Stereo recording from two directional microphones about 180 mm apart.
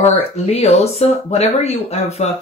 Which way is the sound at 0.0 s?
35° left (ahead or behind).